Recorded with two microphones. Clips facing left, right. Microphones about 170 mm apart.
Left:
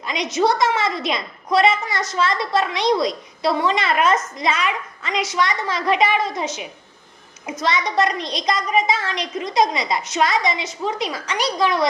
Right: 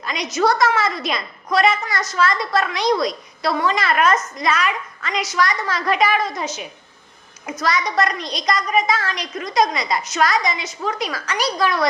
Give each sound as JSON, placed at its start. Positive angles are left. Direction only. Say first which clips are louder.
{"t": 0.0, "sound": "a woman's voice", "louder": "even", "side_deg": 25}